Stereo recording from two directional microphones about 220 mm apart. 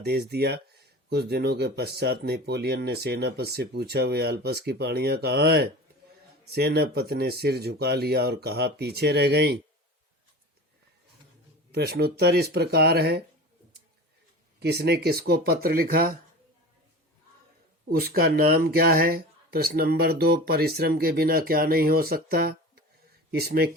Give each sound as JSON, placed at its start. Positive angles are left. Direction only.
{"t": 0.0, "sound": "speech", "side_deg": -45}
{"t": 11.7, "sound": "speech", "side_deg": -45}
{"t": 14.6, "sound": "speech", "side_deg": -50}
{"t": 17.8, "sound": "speech", "side_deg": -45}